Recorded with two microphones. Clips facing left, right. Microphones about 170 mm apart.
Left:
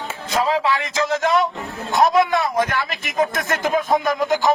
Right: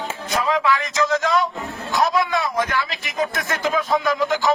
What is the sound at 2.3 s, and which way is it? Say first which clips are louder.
A man's voice: left 2 dB; 55° left (ahead or behind).